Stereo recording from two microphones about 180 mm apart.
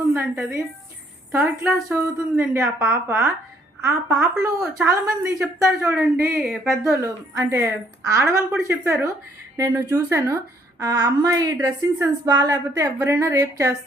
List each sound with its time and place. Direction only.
0.1 s a woman's voice: 10° right (ahead or behind)